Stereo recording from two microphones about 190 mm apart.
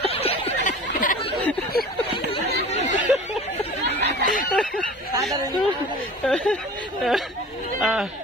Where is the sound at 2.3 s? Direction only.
35° left (ahead or behind).